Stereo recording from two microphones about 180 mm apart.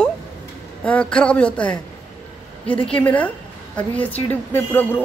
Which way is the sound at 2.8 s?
5° left (ahead or behind).